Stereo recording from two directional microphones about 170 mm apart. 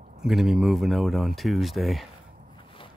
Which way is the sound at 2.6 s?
30° left (ahead or behind).